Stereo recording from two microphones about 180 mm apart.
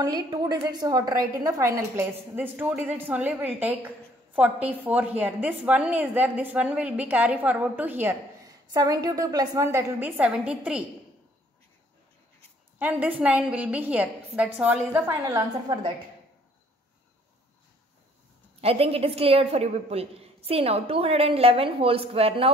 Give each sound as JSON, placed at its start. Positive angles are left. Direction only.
{"t": 0.0, "sound": "a woman's voice", "side_deg": -20}
{"t": 8.7, "sound": "a woman's voice", "side_deg": -20}
{"t": 12.7, "sound": "a woman's voice", "side_deg": -10}
{"t": 18.6, "sound": "a woman's voice", "side_deg": -35}